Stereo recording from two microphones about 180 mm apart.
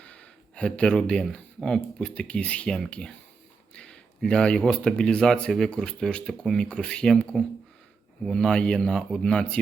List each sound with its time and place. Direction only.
0.0 s speech: 5° left (ahead or behind)